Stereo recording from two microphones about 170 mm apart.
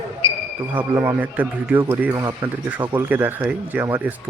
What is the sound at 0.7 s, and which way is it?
Speech, 20° right (ahead or behind).